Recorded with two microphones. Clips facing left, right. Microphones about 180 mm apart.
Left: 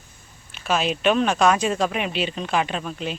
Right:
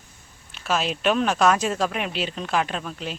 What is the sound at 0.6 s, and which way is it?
Speech, centre (ahead or behind).